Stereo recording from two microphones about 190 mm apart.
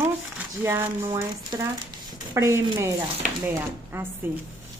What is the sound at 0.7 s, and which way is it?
Speech, 15° right (ahead or behind).